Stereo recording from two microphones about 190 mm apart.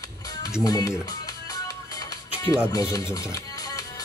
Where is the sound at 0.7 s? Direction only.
20° left (ahead or behind).